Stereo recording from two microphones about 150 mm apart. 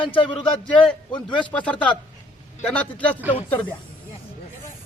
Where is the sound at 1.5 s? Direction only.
10° left (ahead or behind).